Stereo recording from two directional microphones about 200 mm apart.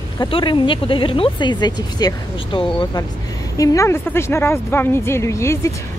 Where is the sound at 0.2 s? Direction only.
25° left (ahead or behind).